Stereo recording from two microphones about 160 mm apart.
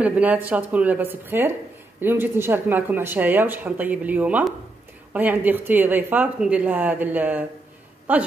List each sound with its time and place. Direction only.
0.0 s speech: 10° right (ahead or behind)